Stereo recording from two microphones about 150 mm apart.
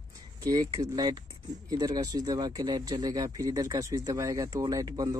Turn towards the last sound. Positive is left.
turn(degrees=-25)  # may be behind; listen again after turning